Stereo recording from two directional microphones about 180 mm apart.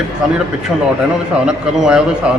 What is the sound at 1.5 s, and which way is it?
Speech, 5° right (ahead or behind).